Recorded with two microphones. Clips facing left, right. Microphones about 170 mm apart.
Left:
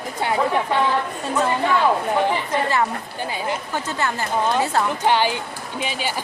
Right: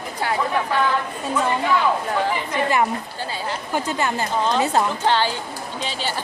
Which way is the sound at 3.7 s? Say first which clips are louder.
Right 6 dB; 15° right (ahead or behind).